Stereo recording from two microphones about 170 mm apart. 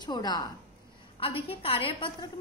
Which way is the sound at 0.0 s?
25° left (ahead or behind).